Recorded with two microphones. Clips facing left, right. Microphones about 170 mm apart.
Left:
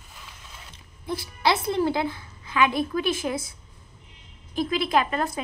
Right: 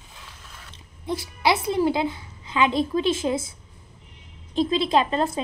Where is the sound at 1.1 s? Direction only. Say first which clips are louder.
Right 2 dB; 15° right (ahead or behind).